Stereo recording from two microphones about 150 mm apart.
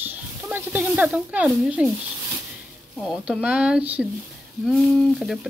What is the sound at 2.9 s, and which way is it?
Speech, centre (ahead or behind).